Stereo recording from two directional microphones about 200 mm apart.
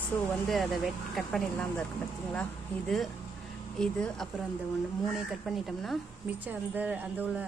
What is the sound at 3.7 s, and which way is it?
A woman's voice, 5° left (ahead or behind).